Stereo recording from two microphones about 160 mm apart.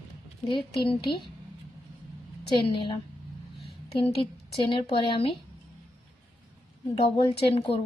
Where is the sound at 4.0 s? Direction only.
35° left (ahead or behind).